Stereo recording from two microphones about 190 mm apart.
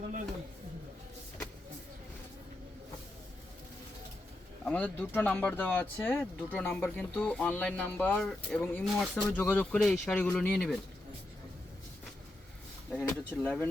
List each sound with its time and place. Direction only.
4.6 s speech: 5° left (ahead or behind)
12.9 s speech: 5° left (ahead or behind)